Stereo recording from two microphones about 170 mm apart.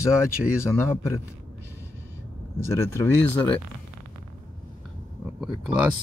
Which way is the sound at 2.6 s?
15° left (ahead or behind).